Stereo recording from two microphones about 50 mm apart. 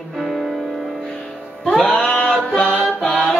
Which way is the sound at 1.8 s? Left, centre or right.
Centre.